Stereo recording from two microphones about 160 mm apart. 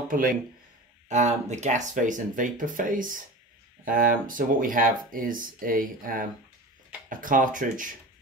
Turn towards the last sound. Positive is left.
turn(degrees=-55)  # may be behind; listen again after turning